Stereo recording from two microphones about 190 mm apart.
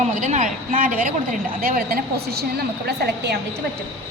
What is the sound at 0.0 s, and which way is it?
Speech, 40° right (ahead or behind).